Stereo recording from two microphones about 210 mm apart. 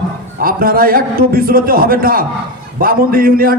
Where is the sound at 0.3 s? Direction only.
45° right (ahead or behind).